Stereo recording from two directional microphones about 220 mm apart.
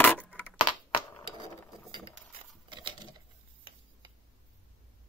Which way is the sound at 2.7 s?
20° right (ahead or behind).